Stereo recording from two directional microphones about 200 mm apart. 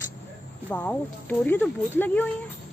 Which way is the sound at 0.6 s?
10° left (ahead or behind).